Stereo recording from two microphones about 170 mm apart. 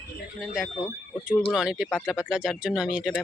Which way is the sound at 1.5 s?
5° right (ahead or behind).